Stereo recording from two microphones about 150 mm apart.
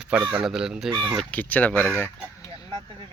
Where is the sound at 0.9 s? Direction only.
20° right (ahead or behind).